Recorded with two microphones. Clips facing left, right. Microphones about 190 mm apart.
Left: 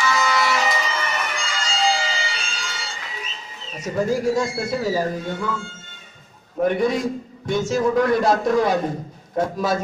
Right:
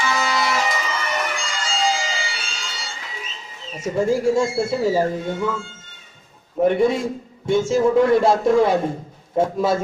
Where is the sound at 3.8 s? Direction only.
25° right (ahead or behind).